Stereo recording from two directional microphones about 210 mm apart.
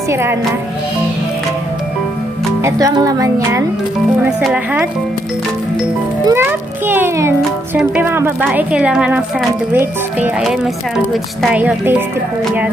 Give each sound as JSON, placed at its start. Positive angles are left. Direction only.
{"t": 0.1, "sound": "speech", "side_deg": -10}
{"t": 2.6, "sound": "speech", "side_deg": -15}
{"t": 4.3, "sound": "speech", "side_deg": -5}
{"t": 6.2, "sound": "a sound", "side_deg": -10}
{"t": 7.8, "sound": "speech", "side_deg": -10}